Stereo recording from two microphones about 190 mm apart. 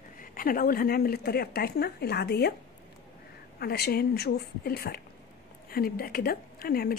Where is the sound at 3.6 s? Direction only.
55° left (ahead or behind).